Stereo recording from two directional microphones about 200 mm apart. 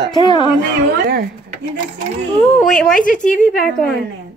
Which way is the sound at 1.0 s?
50° right (ahead or behind).